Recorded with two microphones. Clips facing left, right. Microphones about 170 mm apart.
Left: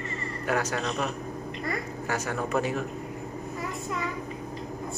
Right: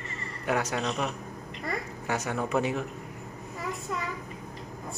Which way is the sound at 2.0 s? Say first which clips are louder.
Even; 20° right (ahead or behind).